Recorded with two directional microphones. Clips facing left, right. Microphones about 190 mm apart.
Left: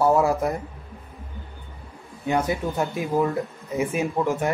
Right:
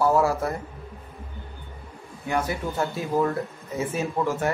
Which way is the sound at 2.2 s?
20° left (ahead or behind).